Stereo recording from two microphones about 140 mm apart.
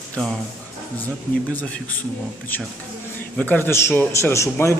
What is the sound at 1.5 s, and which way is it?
A man's voice, 10° left (ahead or behind).